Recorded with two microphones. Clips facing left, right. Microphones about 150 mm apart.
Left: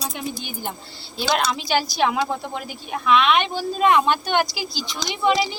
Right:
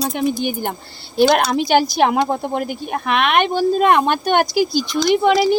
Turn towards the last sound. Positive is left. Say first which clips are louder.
# right 7 dB
turn(degrees=-55)  # may be behind; listen again after turning